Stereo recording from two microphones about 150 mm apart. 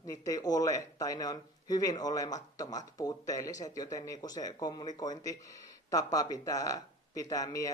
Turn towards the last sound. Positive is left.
turn(degrees=25)  # may be behind; listen again after turning